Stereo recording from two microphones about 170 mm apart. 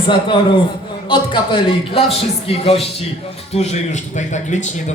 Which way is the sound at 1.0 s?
30° left (ahead or behind).